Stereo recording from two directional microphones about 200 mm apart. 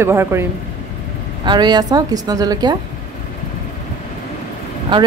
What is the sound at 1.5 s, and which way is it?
A woman's voice, 20° right (ahead or behind).